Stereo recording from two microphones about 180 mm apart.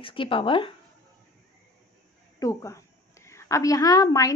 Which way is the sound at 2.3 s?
15° left (ahead or behind).